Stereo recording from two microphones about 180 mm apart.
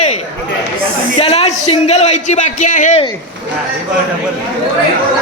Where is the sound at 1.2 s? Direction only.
35° left (ahead or behind).